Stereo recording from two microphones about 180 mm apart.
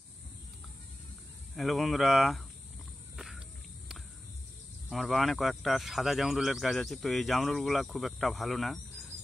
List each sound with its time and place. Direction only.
1.5 s speech: centre (ahead or behind)
3.2 s a sound: centre (ahead or behind)
4.9 s speech: centre (ahead or behind)